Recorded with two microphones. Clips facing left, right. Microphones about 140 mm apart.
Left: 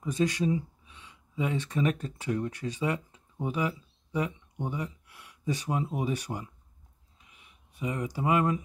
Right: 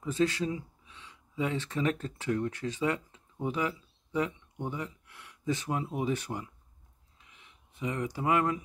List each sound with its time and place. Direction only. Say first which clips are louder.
0.0 s speech: left 1 dB; 15° left (ahead or behind)